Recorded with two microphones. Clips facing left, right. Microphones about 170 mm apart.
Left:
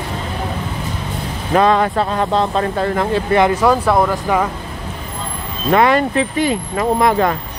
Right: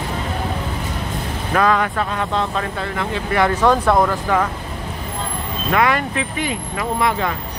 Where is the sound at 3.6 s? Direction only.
5° left (ahead or behind).